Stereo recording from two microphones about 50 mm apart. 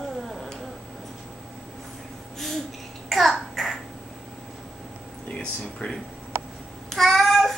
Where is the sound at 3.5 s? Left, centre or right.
Centre.